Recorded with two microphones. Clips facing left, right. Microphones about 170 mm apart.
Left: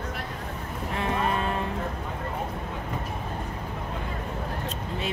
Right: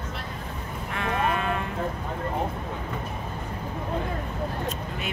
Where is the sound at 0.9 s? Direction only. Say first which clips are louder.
Right 1 dB; 30° left (ahead or behind).